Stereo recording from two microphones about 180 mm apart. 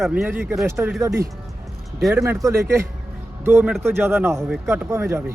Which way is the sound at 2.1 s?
15° right (ahead or behind).